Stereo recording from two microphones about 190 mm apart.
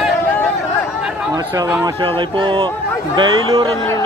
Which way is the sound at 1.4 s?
15° right (ahead or behind).